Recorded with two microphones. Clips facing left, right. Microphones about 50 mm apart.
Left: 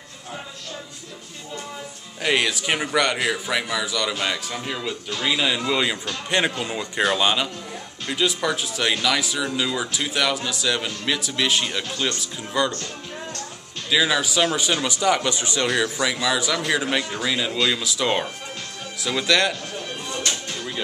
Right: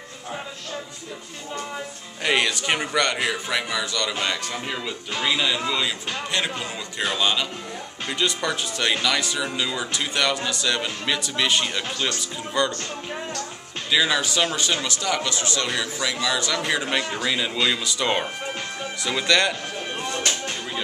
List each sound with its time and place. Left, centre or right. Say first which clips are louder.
2.2 s speech: even; centre
5.7 s a man's voice: left 2 dB; centre
8.1 s speech: left 2 dB; centre
13.8 s speech: left 1 dB; centre; by 15.7 s left
15.7 s speech: left 4 dB; centre
19.8 s music: right 2 dB; right